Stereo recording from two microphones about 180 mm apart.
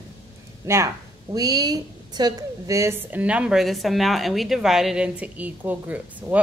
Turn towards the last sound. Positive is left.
turn(degrees=-10)  # may be behind; listen again after turning